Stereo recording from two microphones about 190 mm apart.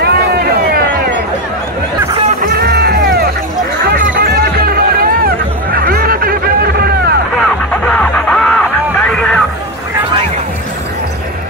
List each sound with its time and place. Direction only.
0.0 s a sound: 55° right (ahead or behind)
2.4 s music: 55° right (ahead or behind)
7.3 s music: 5° left (ahead or behind)